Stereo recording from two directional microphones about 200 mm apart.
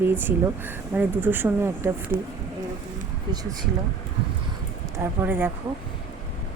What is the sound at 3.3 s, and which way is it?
Speech, 20° right (ahead or behind).